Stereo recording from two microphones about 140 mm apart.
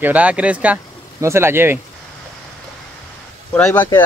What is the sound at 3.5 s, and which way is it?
Speech, 10° left (ahead or behind).